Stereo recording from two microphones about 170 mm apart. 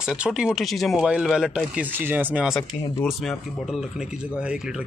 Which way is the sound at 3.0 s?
Centre (ahead or behind).